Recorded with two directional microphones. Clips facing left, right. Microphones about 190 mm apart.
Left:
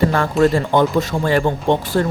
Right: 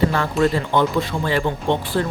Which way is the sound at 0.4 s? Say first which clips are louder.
Left 4 dB; 45° left (ahead or behind).